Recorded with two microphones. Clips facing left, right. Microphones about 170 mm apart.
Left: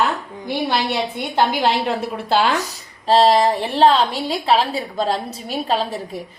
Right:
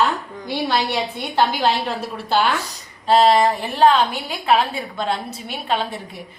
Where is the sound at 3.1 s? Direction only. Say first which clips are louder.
Left 1 dB; 35° left (ahead or behind).